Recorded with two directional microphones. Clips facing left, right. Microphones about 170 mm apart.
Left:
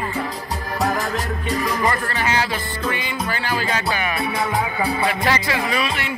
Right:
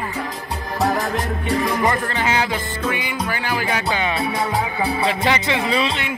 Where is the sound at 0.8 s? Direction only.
20° right (ahead or behind).